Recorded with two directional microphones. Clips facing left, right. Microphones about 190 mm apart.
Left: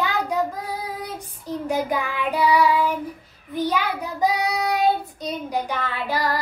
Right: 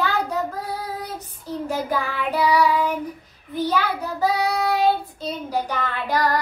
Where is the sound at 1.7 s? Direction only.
15° left (ahead or behind).